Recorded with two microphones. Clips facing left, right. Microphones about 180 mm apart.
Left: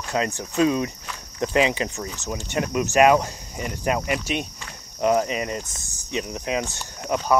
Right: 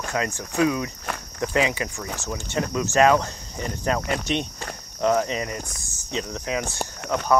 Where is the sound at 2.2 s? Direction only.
15° left (ahead or behind).